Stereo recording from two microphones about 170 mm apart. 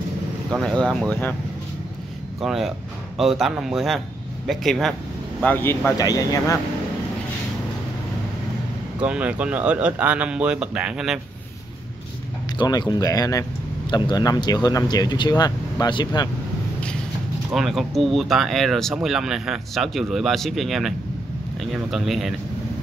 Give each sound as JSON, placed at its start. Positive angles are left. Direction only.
{"t": 0.5, "sound": "speech", "side_deg": 5}
{"t": 2.4, "sound": "speech", "side_deg": 0}
{"t": 9.0, "sound": "speech", "side_deg": -5}
{"t": 12.5, "sound": "speech", "side_deg": 25}
{"t": 17.5, "sound": "speech", "side_deg": 0}